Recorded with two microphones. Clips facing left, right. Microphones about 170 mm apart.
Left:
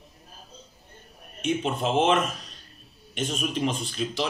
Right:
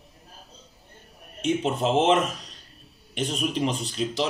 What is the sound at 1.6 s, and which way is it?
Speech, 25° right (ahead or behind).